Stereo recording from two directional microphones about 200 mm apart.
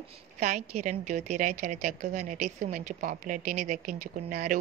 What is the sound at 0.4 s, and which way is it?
A woman's voice, 40° right (ahead or behind).